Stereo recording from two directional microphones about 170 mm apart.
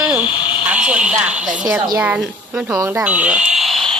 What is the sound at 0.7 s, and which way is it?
A woman's voice, 5° right (ahead or behind).